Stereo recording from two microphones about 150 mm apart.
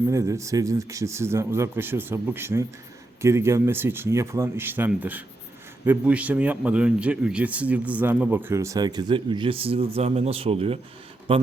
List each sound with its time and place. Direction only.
0.1 s a man's voice: 20° right (ahead or behind)